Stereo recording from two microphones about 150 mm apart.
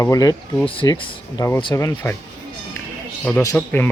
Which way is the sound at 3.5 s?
10° left (ahead or behind).